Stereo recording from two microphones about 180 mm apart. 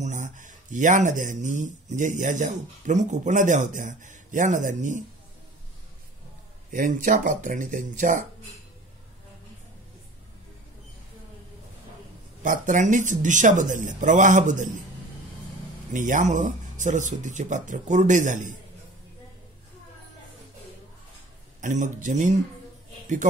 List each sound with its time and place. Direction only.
0.0 s speech: 45° right (ahead or behind)
6.7 s speech: 50° right (ahead or behind)
12.4 s speech: 45° right (ahead or behind)
15.9 s speech: 45° right (ahead or behind)
21.5 s speech: 45° right (ahead or behind)